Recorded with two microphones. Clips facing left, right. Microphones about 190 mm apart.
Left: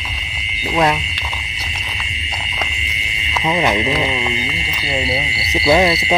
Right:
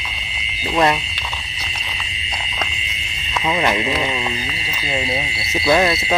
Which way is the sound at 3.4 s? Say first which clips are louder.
Left 2 dB; 5° left (ahead or behind).